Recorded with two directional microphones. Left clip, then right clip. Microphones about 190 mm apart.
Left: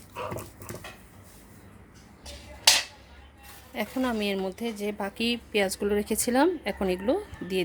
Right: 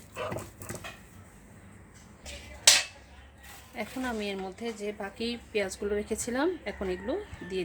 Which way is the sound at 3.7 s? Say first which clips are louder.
Left 5 dB; 45° left (ahead or behind).